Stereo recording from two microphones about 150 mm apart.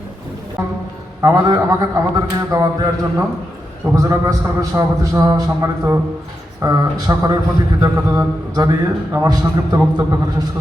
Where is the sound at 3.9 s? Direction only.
20° right (ahead or behind).